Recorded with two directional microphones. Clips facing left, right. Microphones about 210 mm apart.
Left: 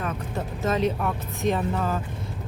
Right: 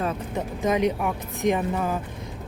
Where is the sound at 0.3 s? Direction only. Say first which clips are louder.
Right 2 dB; 15° right (ahead or behind).